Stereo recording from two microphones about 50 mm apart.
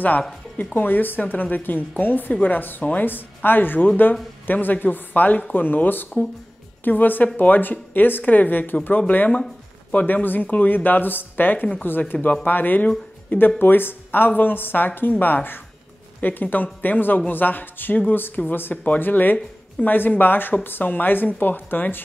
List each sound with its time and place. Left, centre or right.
0.7 s a woman's voice: left
9.3 s a sound: centre
9.9 s a woman's voice: left